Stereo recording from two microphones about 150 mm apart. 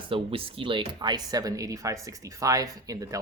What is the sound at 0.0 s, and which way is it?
Speech, 35° right (ahead or behind).